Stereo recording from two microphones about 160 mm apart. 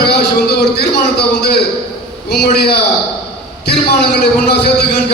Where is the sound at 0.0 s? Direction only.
90° left.